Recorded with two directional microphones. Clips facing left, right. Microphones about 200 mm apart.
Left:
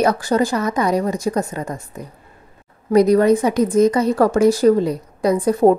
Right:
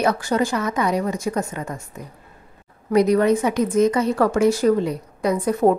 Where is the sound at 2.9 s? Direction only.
35° left (ahead or behind).